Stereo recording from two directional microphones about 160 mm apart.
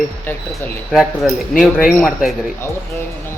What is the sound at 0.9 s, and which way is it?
Speech, 5° right (ahead or behind).